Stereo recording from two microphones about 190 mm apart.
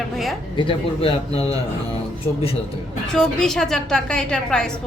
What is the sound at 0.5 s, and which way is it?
A man's voice, 30° left (ahead or behind).